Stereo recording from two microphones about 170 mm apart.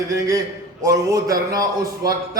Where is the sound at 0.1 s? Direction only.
20° right (ahead or behind).